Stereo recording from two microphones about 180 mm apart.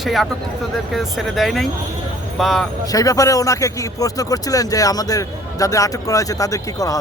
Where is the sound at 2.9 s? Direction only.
20° left (ahead or behind).